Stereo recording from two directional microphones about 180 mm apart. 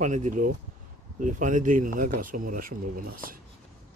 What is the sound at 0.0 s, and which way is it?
Speech, 45° right (ahead or behind).